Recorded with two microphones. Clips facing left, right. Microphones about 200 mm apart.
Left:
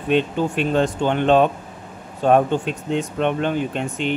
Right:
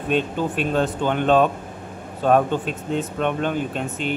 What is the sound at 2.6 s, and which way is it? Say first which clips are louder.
Speech: left 2 dB; 45° right (ahead or behind).